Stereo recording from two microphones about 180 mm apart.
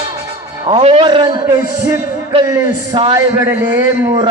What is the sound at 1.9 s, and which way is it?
A man's voice, 20° right (ahead or behind).